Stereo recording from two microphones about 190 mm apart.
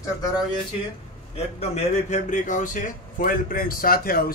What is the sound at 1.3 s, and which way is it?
A man's voice, 35° left (ahead or behind).